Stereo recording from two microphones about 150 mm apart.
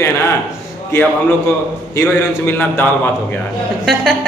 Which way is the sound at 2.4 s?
15° left (ahead or behind).